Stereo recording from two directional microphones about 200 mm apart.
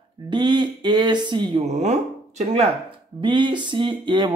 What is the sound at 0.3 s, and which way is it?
Speech, 25° right (ahead or behind).